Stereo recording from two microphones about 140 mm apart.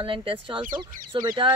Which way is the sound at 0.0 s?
40° right (ahead or behind).